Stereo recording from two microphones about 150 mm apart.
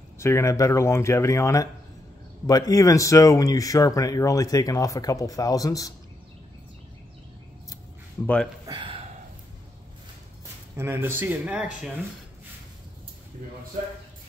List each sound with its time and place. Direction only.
0.2 s speech: 20° left (ahead or behind)
8.6 s a sound: 35° right (ahead or behind)
10.8 s speech: 15° right (ahead or behind)